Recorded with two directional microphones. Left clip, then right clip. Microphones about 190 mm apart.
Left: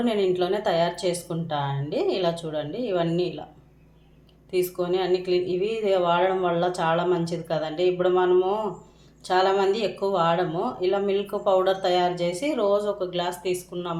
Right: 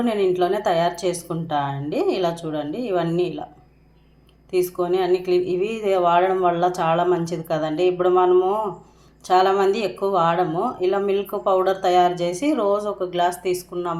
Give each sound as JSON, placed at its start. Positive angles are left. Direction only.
{"t": 0.0, "sound": "a woman's voice", "side_deg": -20}
{"t": 4.5, "sound": "a woman's voice", "side_deg": -20}